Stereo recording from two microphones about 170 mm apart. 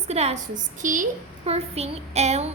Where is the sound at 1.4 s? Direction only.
35° right (ahead or behind).